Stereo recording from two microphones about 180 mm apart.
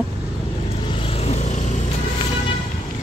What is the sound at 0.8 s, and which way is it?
Vehicle, 30° left (ahead or behind).